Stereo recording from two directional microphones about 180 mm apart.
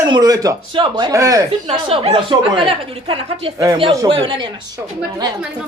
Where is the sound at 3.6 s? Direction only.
20° right (ahead or behind).